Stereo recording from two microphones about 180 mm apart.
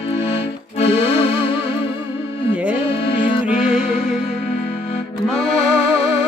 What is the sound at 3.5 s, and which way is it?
Music, 5° right (ahead or behind).